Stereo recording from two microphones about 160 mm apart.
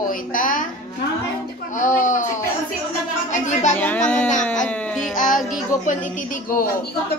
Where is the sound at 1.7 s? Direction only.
55° left (ahead or behind).